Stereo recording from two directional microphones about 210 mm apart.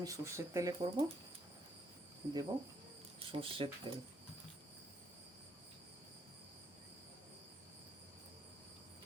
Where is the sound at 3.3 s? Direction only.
25° right (ahead or behind).